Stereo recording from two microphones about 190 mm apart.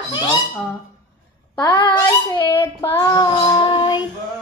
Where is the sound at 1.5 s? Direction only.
25° left (ahead or behind).